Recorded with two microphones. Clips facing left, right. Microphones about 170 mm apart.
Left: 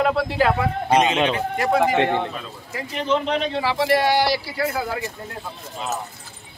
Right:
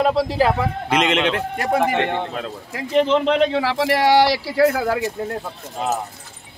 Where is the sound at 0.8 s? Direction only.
90° right.